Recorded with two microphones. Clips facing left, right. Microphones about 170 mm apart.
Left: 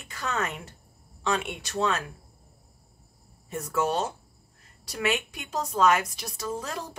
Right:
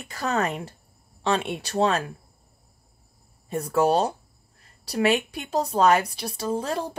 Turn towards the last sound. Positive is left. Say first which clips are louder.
# right 6 dB
turn(degrees=-30)  # may be behind; listen again after turning